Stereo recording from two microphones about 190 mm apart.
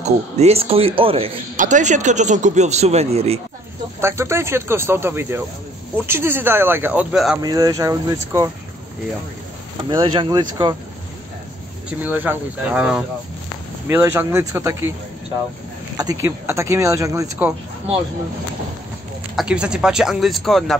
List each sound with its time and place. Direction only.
0.0 s speech: 35° right (ahead or behind)
1.6 s speech: 40° right (ahead or behind)
4.0 s speech: 15° right (ahead or behind)
7.4 s speech: 20° right (ahead or behind)
9.8 s speech: 25° right (ahead or behind)
12.0 s speech: 10° right (ahead or behind)
16.0 s speech: 15° right (ahead or behind)
19.3 s speech: 5° right (ahead or behind)